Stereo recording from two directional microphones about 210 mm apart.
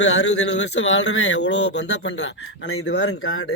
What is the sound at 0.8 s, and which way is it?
Speech, 65° left (ahead or behind).